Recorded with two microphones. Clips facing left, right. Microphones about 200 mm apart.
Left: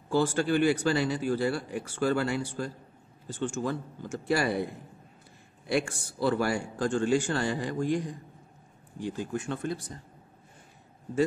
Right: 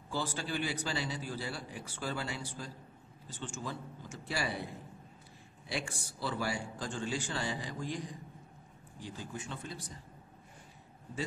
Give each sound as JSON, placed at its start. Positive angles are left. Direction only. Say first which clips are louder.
{"t": 0.1, "sound": "speech", "louder": "left 12 dB", "side_deg": 50}
{"t": 3.3, "sound": "a man's voice", "louder": "left 11 dB", "side_deg": 50}
{"t": 4.3, "sound": "speech", "louder": "left 10 dB", "side_deg": 65}
{"t": 5.7, "sound": "a man's voice", "louder": "left 11 dB", "side_deg": 55}